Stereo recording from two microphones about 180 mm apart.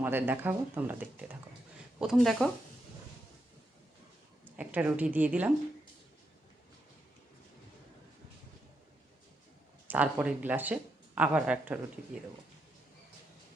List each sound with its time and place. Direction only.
0.0 s speech: 10° right (ahead or behind)
4.4 s speech: 10° right (ahead or behind)
9.8 s speech: 10° right (ahead or behind)